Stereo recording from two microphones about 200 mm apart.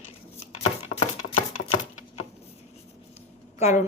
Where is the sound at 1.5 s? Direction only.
90° left.